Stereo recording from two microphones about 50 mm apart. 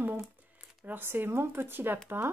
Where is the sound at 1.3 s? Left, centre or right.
Right.